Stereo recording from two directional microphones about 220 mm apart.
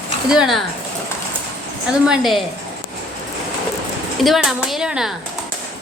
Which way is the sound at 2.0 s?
Centre (ahead or behind).